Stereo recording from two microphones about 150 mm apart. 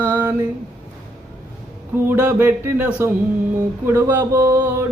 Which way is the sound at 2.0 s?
10° right (ahead or behind).